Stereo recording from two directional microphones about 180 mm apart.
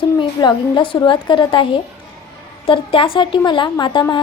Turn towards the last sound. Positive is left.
turn(degrees=25)  # may be behind; listen again after turning